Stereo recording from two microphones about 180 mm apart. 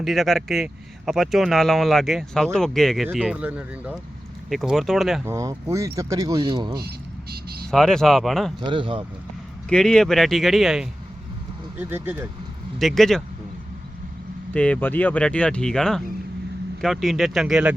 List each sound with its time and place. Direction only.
0.0 s speech: centre (ahead or behind)
5.2 s speech: 15° right (ahead or behind)
6.8 s vehicle: 60° right (ahead or behind)
7.7 s speech: 5° left (ahead or behind)
8.6 s speech: 30° right (ahead or behind)
9.6 s speech: 5° left (ahead or behind)
12.8 s speech: centre (ahead or behind)
14.5 s speech: 5° left (ahead or behind)